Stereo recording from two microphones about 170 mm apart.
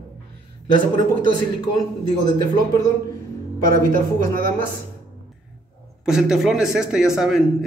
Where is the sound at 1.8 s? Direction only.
25° left (ahead or behind).